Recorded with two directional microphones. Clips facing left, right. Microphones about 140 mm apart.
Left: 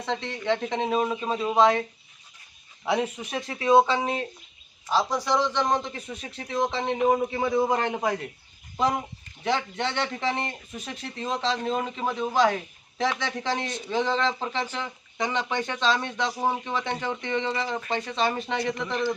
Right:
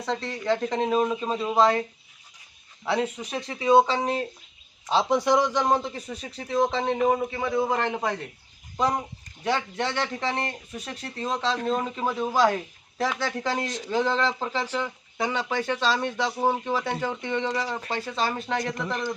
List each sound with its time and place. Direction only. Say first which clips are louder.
0.0 s speech: right 1 dB; centre (ahead or behind)
2.8 s speech: even; 10° left (ahead or behind)
4.9 s speech: right 3 dB; 20° right (ahead or behind); by 7.2 s centre (ahead or behind)
7.3 s a man's voice: left 1 dB; 15° left (ahead or behind)
9.4 s speech: even; centre (ahead or behind)
13.7 s a man's voice: right 1 dB; 90° right
13.9 s speech: right 1 dB; 5° right (ahead or behind)
18.6 s speech: left 2 dB; 45° right (ahead or behind)